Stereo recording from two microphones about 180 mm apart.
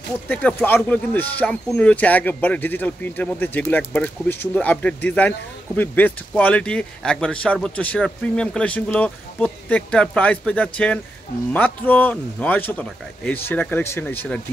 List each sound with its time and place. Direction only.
0.3 s speech: 10° left (ahead or behind)